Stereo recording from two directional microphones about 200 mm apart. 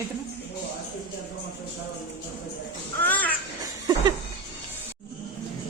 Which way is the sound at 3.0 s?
10° left (ahead or behind).